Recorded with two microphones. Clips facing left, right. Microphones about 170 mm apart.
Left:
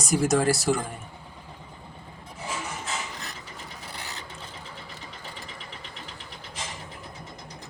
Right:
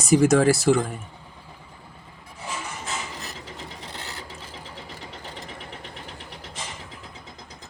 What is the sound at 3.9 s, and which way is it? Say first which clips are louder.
Filing: right 2 dB; 15° left (ahead or behind).